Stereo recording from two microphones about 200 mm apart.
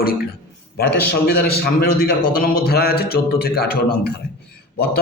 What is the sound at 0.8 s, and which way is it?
A man's voice, 55° left (ahead or behind).